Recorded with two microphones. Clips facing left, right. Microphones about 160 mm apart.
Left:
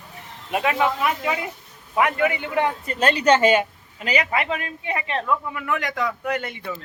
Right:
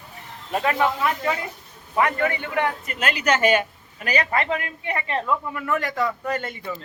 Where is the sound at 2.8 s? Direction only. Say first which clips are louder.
Left 5 dB; 30° left (ahead or behind); by 5.0 s 15° left (ahead or behind).